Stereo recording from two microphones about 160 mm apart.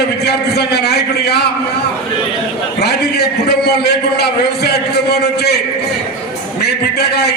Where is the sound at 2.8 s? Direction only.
90° left.